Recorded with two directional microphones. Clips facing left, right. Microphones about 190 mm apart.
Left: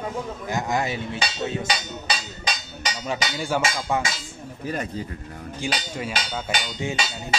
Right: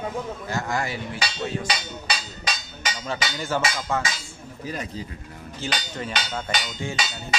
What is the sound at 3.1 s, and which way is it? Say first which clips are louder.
Speech: left 2 dB; 15° left (ahead or behind).